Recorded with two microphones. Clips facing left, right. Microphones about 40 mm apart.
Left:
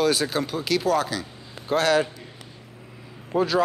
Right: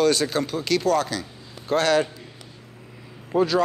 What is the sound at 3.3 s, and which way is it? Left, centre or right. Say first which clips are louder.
Speech: right 1 dB; centre.